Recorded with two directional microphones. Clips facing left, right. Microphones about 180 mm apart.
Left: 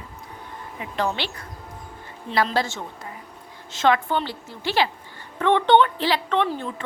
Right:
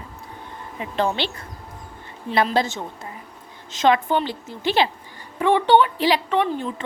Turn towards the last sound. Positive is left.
turn(degrees=-10)  # may be behind; listen again after turning